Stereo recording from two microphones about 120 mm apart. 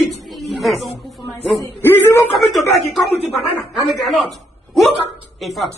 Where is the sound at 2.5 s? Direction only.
Centre (ahead or behind).